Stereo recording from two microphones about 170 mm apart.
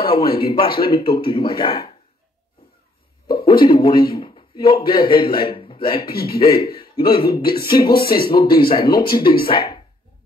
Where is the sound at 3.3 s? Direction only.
30° left (ahead or behind).